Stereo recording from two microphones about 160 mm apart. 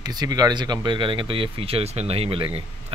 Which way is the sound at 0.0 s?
25° right (ahead or behind).